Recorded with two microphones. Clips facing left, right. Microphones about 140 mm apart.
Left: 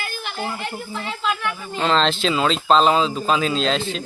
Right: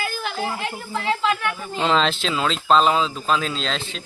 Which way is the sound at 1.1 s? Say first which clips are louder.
Right 4 dB; 90° right.